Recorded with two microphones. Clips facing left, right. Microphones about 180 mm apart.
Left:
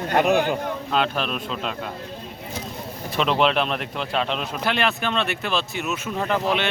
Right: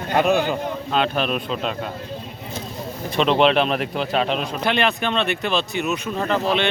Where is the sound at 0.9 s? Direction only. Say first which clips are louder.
Right 3 dB; centre (ahead or behind).